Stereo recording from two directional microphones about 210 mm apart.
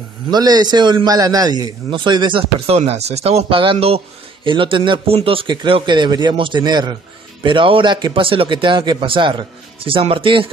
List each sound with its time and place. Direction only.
0.3 s a man's voice: 20° right (ahead or behind)